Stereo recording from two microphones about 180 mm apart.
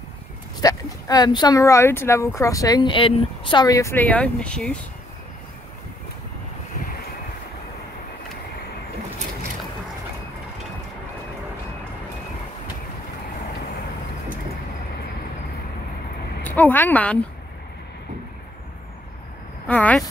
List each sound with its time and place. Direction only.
0.6 s speech: 20° left (ahead or behind); by 4.7 s 5° left (ahead or behind)
16.4 s a woman's voice: 10° left (ahead or behind)
19.7 s speech: 10° left (ahead or behind)